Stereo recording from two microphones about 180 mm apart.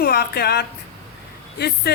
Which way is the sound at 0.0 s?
60° left (ahead or behind).